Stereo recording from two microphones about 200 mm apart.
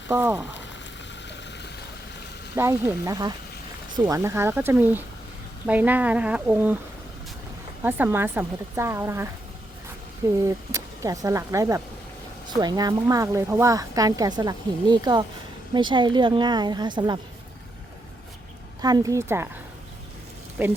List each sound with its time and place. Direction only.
0.1 s speech: 10° right (ahead or behind)
2.6 s speech: 15° right (ahead or behind)
7.8 s speech: 10° right (ahead or behind)
10.4 s speech: 15° right (ahead or behind)
18.8 s speech: 20° right (ahead or behind)
20.6 s speech: 10° right (ahead or behind)